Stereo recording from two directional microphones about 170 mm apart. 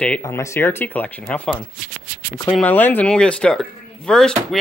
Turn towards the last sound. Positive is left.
turn(degrees=5)  # may be behind; listen again after turning